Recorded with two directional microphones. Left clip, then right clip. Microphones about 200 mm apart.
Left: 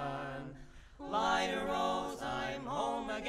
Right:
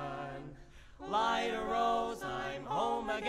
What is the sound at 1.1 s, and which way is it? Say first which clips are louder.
Chant: right 1 dB; 25° right (ahead or behind).